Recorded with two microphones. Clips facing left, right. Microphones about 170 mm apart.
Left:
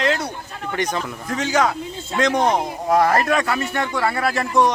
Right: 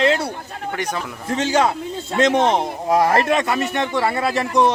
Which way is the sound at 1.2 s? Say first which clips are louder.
Right 2 dB; 30° right (ahead or behind).